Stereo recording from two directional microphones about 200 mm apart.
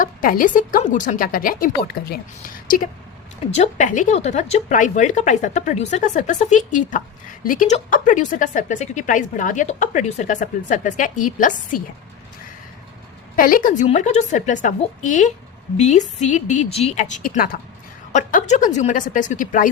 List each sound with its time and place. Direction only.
0.0 s a woman's voice: 45° left (ahead or behind)
13.3 s speech: 45° left (ahead or behind)